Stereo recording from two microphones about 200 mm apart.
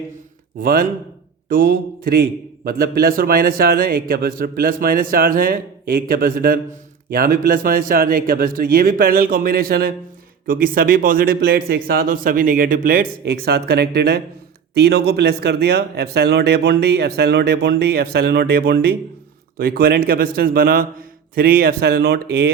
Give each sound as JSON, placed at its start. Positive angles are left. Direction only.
{"t": 0.6, "sound": "a man's voice", "side_deg": -45}